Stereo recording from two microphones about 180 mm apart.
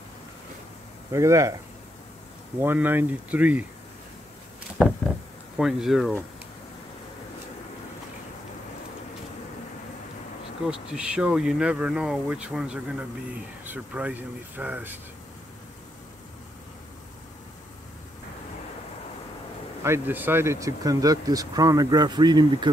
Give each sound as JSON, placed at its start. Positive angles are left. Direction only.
{"t": 1.1, "sound": "speech", "side_deg": -15}
{"t": 2.6, "sound": "speech", "side_deg": -10}
{"t": 5.6, "sound": "speech", "side_deg": 0}
{"t": 10.7, "sound": "speech", "side_deg": -5}
{"t": 19.8, "sound": "speech", "side_deg": -10}